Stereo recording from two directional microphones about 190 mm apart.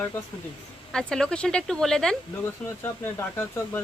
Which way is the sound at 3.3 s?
15° left (ahead or behind).